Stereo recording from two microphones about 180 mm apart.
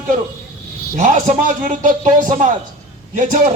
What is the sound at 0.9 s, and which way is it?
Music, 45° right (ahead or behind).